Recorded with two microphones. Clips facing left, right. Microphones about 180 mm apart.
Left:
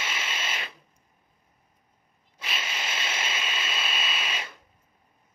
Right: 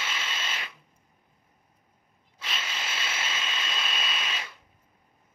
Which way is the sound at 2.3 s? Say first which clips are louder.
Left 2 dB; 15° left (ahead or behind).